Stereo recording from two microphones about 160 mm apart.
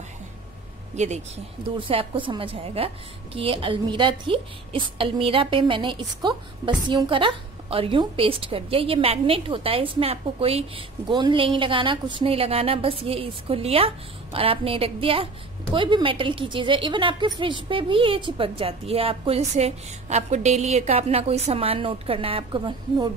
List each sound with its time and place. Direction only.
0.9 s speech: 45° right (ahead or behind)
1.8 s a woman's voice: 35° right (ahead or behind)